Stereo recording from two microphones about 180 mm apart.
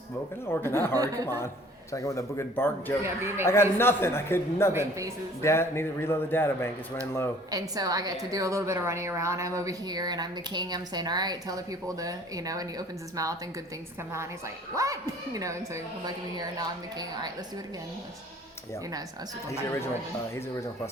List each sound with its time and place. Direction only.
0.4 s speech: 15° left (ahead or behind)
0.9 s a woman's voice: 20° right (ahead or behind)
1.9 s speech: 15° left (ahead or behind)
3.0 s a man's voice: 15° right (ahead or behind)
3.4 s speech: 15° left (ahead or behind)
4.7 s a man's voice: 15° right (ahead or behind)
5.4 s speech: 15° left (ahead or behind)
7.5 s a woman's voice: 20° right (ahead or behind)